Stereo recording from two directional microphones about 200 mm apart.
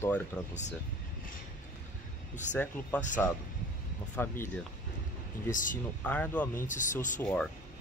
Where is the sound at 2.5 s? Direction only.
60° left (ahead or behind).